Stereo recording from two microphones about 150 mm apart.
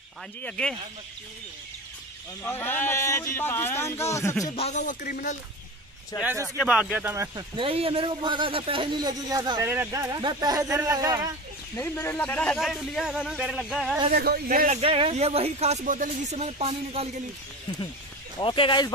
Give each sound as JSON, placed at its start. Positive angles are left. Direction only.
{"t": 0.4, "sound": "speech", "side_deg": 5}
{"t": 2.4, "sound": "speech", "side_deg": 15}
{"t": 4.6, "sound": "speech", "side_deg": 50}
{"t": 6.6, "sound": "speech", "side_deg": -5}
{"t": 7.3, "sound": "speech", "side_deg": -35}
{"t": 11.8, "sound": "speech", "side_deg": 15}
{"t": 12.5, "sound": "speech", "side_deg": 0}
{"t": 14.1, "sound": "speech", "side_deg": -90}
{"t": 14.7, "sound": "speech", "side_deg": -40}
{"t": 18.4, "sound": "speech", "side_deg": 35}